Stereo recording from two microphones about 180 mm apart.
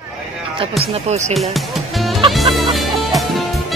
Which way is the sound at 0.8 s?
40° right (ahead or behind).